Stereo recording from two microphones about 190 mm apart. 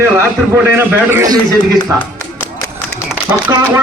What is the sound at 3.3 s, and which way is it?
Speech, 10° right (ahead or behind).